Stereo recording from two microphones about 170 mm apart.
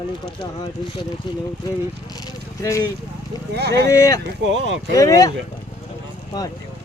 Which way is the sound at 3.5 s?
75° right (ahead or behind).